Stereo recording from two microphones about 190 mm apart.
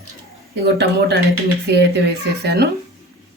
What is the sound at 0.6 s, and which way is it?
Speech, 60° right (ahead or behind).